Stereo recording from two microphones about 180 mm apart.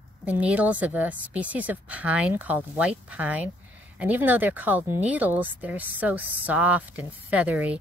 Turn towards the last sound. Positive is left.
turn(degrees=-5)  # may be behind; listen again after turning